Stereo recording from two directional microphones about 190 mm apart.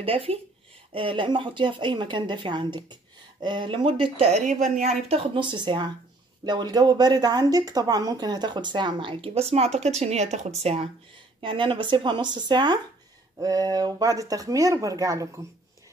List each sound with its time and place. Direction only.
0.0 s a woman's voice: 30° right (ahead or behind)